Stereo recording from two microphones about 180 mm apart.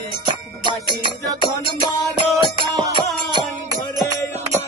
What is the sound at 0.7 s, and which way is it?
Music, 25° right (ahead or behind).